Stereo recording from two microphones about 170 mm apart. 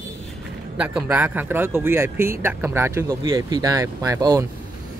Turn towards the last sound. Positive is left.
turn(degrees=-20)  # may be behind; listen again after turning